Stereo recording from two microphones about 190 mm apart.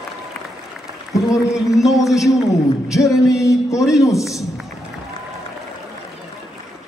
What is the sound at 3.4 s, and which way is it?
Speech, 15° left (ahead or behind).